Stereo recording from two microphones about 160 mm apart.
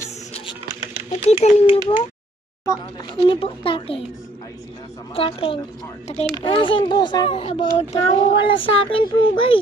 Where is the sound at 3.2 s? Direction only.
35° left (ahead or behind).